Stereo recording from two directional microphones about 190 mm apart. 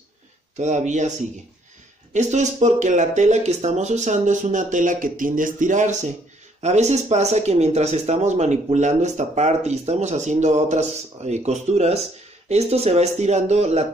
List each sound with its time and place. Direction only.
0.6 s speech: 40° right (ahead or behind)
2.1 s speech: 40° right (ahead or behind)